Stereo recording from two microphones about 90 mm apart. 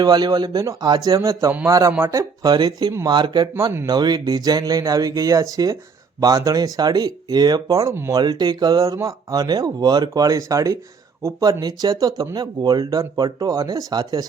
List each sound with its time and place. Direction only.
0.0 s speech: 45° right (ahead or behind)
8.1 s speech: 50° right (ahead or behind); by 11.4 s 30° right (ahead or behind)
11.6 s speech: 45° right (ahead or behind)